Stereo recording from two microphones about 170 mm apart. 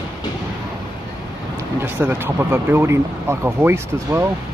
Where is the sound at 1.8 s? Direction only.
10° right (ahead or behind).